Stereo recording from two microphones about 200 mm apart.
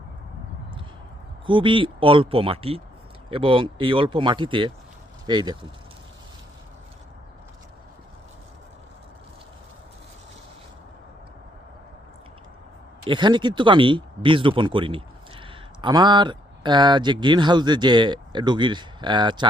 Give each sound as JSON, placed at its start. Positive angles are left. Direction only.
{"t": 1.5, "sound": "speech", "side_deg": -25}
{"t": 13.1, "sound": "speech", "side_deg": -20}